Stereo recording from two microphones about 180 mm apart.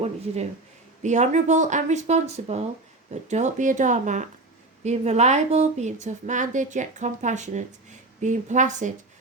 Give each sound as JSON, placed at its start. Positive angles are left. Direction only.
{"t": 1.0, "sound": "speech", "side_deg": -40}